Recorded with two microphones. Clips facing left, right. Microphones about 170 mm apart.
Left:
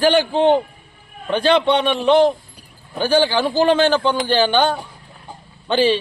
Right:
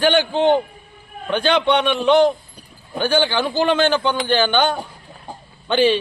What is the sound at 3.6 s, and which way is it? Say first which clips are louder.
Speech: left 2 dB; 35° left (ahead or behind).